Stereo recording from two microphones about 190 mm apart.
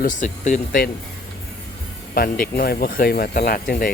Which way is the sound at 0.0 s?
45° left (ahead or behind).